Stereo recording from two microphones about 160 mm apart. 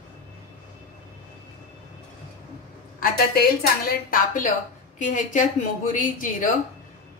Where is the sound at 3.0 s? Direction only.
70° left (ahead or behind).